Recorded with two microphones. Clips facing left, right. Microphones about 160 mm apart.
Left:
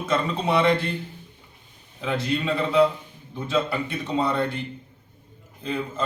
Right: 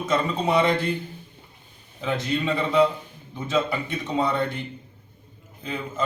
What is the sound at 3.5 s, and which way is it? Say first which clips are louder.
Speech: even; centre (ahead or behind).